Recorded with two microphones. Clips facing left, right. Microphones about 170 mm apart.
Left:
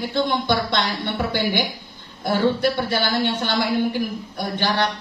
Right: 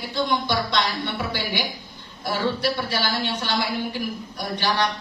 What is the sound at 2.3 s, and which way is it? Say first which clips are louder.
Speech: left 5 dB; 55° left (ahead or behind).